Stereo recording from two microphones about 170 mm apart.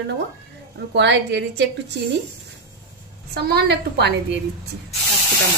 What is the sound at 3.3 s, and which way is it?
Speech, 70° right (ahead or behind).